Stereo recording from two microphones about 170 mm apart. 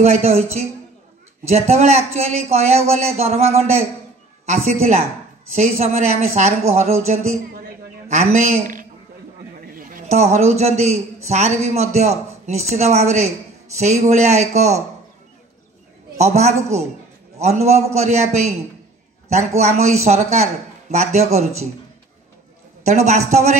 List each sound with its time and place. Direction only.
0.0 s a man's voice: 35° right (ahead or behind)
4.5 s a man's voice: 40° right (ahead or behind)
10.3 s a man's voice: 40° right (ahead or behind)
16.2 s a man's voice: 40° right (ahead or behind)
22.8 s a man's voice: 40° right (ahead or behind)